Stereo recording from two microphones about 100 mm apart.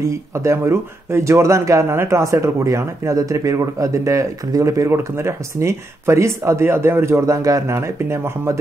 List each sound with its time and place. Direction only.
0.0 s speech: 30° right (ahead or behind)